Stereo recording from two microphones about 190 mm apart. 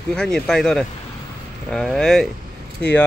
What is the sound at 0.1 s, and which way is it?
Speech, 5° left (ahead or behind).